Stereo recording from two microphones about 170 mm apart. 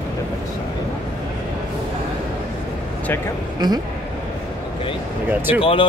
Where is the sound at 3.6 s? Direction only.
25° right (ahead or behind).